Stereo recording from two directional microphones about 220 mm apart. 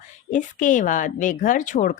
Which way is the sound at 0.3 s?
35° left (ahead or behind).